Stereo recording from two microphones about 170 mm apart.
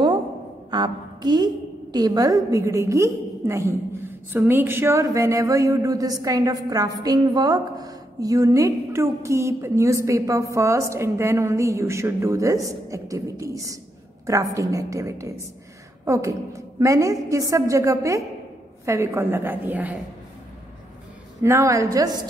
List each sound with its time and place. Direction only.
0.7 s a woman's voice: 25° right (ahead or behind); by 20.0 s 10° right (ahead or behind)
21.4 s a woman's voice: 15° right (ahead or behind)